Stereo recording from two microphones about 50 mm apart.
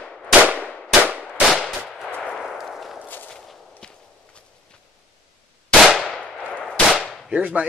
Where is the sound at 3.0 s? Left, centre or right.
Left.